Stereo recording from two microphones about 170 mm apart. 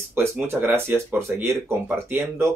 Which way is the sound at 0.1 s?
15° right (ahead or behind).